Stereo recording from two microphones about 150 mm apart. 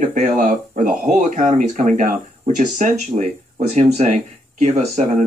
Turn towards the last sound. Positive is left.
turn(degrees=-50)  # may be behind; listen again after turning